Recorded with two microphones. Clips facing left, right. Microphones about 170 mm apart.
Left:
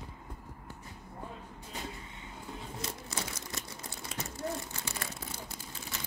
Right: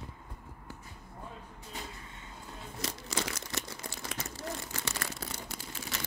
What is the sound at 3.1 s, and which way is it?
Crumpling, 90° right.